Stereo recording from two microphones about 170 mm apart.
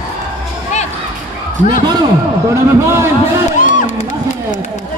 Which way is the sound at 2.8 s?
15° right (ahead or behind).